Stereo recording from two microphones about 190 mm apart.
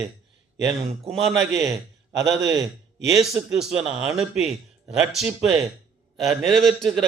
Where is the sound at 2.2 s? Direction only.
15° right (ahead or behind).